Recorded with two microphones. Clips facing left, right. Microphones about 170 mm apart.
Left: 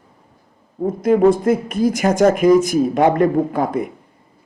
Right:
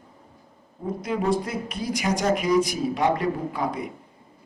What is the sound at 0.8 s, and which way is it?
Speech, 50° left (ahead or behind).